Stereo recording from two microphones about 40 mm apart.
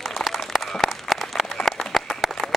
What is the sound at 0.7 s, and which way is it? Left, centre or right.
Applause, centre.